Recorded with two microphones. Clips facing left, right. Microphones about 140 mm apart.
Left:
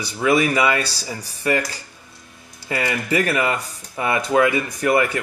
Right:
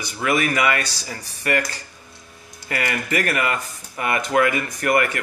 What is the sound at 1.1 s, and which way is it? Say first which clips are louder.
Speech: left 2 dB; 15° left (ahead or behind).